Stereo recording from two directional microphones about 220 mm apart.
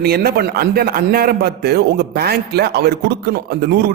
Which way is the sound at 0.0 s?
45° right (ahead or behind).